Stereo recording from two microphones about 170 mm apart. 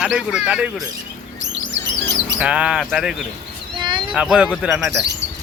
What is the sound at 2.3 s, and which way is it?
Speech, 5° right (ahead or behind).